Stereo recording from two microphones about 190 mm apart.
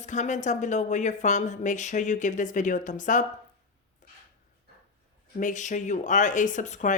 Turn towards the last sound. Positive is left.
turn(degrees=40)  # may be behind; listen again after turning